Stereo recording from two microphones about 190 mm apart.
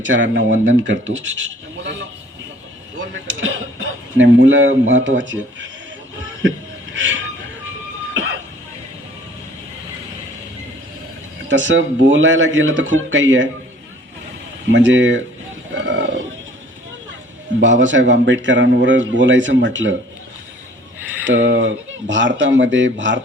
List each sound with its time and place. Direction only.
0.0 s a man's voice: 80° right
3.2 s a sound: 90° right
4.9 s a man's voice: 80° right
6.9 s a sound: 90° right
8.1 s cough: 85° right
11.4 s a man's voice: 70° right (ahead or behind)
14.7 s a man's voice: 70° right (ahead or behind)
15.7 s bird: 75° right (ahead or behind)
17.6 s a man's voice: 80° right
21.2 s a man's voice: 75° right (ahead or behind)